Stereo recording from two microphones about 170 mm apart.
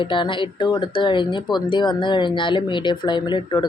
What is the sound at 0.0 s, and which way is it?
Speech, 30° left (ahead or behind).